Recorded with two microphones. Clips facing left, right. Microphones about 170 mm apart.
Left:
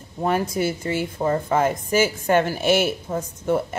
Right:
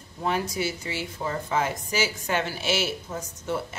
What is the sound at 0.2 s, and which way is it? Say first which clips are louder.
A woman's voice: left 5 dB; 50° left (ahead or behind).